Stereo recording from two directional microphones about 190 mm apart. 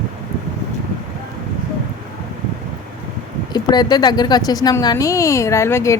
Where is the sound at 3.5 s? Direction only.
20° left (ahead or behind).